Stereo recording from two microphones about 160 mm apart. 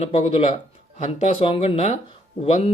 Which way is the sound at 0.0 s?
40° left (ahead or behind).